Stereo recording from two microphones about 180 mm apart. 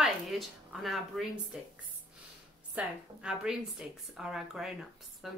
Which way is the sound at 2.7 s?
5° right (ahead or behind).